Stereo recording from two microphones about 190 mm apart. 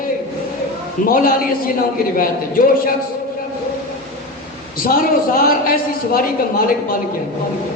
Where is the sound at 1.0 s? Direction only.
50° left (ahead or behind).